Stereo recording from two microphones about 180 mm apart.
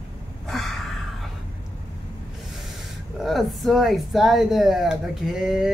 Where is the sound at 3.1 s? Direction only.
Centre (ahead or behind).